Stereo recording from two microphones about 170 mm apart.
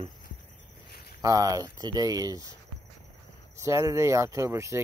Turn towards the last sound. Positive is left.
turn(degrees=-15)  # may be behind; listen again after turning